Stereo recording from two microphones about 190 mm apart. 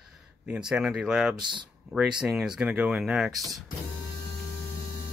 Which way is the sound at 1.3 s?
25° right (ahead or behind).